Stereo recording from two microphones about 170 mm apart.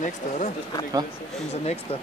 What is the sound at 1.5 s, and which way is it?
Speech, 40° left (ahead or behind).